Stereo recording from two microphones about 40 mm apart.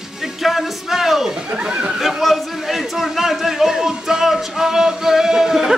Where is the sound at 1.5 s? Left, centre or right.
Right.